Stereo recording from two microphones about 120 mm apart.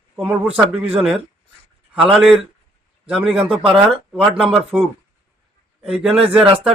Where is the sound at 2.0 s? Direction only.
5° right (ahead or behind).